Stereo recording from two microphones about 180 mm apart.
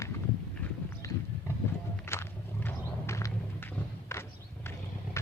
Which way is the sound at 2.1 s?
10° left (ahead or behind).